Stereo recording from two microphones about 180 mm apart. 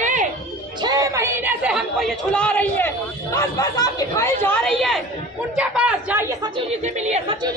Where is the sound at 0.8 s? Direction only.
20° right (ahead or behind); by 2.9 s 10° left (ahead or behind).